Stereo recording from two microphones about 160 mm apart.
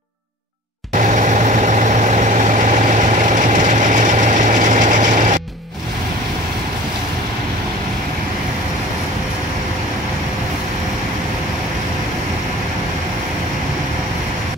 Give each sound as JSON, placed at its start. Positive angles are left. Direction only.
{"t": 0.9, "sound": "vehicle", "side_deg": -50}